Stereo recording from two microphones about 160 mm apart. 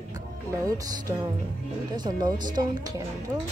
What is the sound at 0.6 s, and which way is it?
A woman's voice, 20° right (ahead or behind).